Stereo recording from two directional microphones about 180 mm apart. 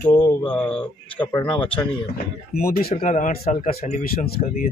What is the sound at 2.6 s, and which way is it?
Speech, 55° left (ahead or behind).